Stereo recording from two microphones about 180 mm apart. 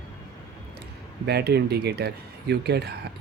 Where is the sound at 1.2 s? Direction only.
65° right (ahead or behind).